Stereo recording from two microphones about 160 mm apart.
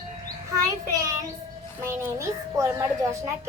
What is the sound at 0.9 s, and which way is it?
A child's voice, 20° right (ahead or behind).